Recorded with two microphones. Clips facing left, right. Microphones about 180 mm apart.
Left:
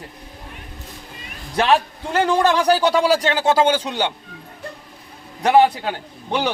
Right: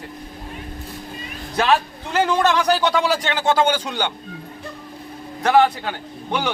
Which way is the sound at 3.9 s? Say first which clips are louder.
Left 2 dB; 30° left (ahead or behind).